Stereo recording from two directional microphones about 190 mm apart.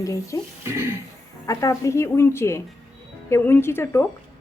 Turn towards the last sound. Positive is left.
turn(degrees=10)  # may be behind; listen again after turning